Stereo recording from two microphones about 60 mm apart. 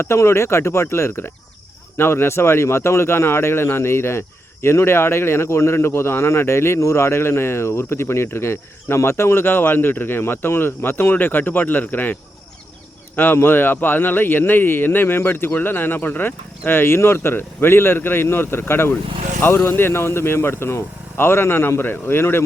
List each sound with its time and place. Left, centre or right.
0.0 s speech: left
13.1 s speech: left